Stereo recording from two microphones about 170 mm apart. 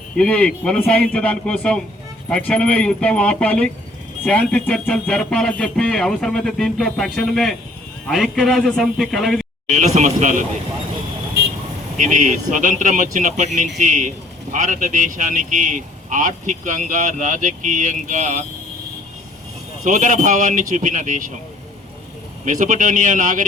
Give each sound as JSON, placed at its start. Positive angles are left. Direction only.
{"t": 0.2, "sound": "speech", "side_deg": 5}
{"t": 9.6, "sound": "speech", "side_deg": -45}
{"t": 11.9, "sound": "speech", "side_deg": -50}
{"t": 19.8, "sound": "speech", "side_deg": -50}
{"t": 22.4, "sound": "speech", "side_deg": -45}